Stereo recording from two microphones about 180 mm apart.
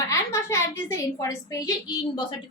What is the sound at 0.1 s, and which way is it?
A woman's voice, 15° left (ahead or behind).